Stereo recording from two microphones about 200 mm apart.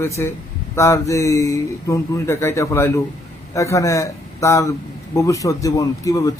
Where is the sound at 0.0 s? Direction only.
15° left (ahead or behind).